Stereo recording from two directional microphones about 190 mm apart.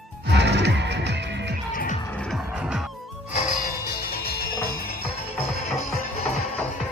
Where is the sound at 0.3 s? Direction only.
65° right (ahead or behind).